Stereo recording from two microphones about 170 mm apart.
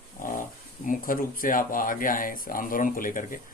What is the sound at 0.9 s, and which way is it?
Speech, 55° left (ahead or behind).